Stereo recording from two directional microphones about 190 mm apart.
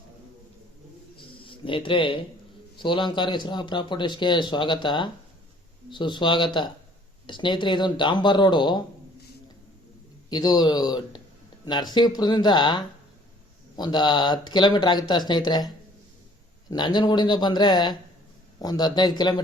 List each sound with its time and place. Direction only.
1.5 s a man's voice: 25° left (ahead or behind)
10.2 s a man's voice: 20° left (ahead or behind)